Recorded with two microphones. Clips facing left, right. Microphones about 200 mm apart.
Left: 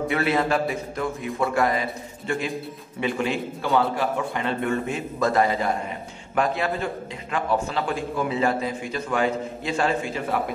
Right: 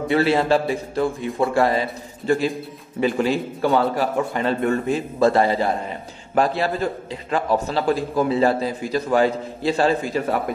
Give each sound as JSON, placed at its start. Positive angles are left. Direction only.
{"t": 0.1, "sound": "a man's voice", "side_deg": -30}